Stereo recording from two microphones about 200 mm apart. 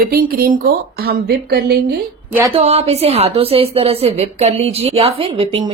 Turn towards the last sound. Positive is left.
turn(degrees=-30)  # may be behind; listen again after turning